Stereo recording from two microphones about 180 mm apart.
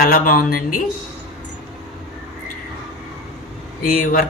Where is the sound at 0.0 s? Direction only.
50° left (ahead or behind).